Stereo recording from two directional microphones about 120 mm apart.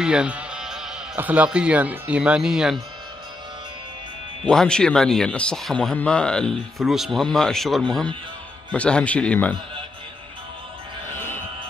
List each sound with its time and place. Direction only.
0.0 s sheep: 5° right (ahead or behind)
1.1 s speech: 15° right (ahead or behind)
4.5 s speech: 5° left (ahead or behind)
11.1 s music: 20° left (ahead or behind)